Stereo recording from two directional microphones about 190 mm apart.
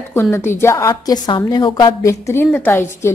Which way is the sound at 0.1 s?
10° left (ahead or behind).